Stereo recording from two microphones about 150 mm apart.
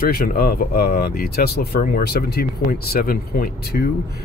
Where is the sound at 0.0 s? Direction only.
80° left.